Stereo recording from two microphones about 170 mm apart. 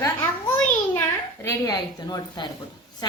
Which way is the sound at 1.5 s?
20° left (ahead or behind).